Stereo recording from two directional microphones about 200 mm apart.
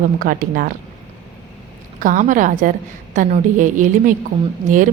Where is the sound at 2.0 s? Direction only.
40° right (ahead or behind).